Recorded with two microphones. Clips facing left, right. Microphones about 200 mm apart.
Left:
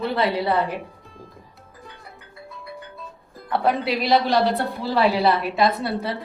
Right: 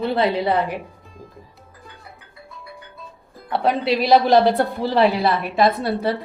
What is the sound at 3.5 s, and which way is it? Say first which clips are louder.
Speech: right 1 dB; 25° right (ahead or behind).